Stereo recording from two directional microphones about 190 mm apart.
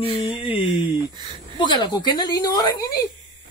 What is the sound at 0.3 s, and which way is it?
Music, 30° left (ahead or behind).